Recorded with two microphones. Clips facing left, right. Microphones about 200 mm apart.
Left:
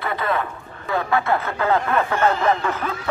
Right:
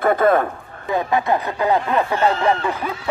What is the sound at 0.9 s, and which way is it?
Speech, 15° right (ahead or behind).